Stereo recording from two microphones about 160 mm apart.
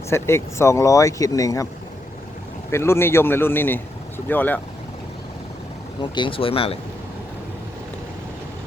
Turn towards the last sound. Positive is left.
turn(degrees=35)  # may be behind; listen again after turning